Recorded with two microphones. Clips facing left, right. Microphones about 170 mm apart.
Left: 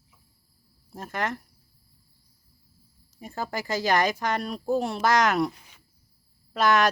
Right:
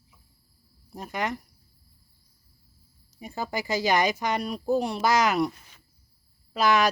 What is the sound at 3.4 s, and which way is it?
Speech, centre (ahead or behind).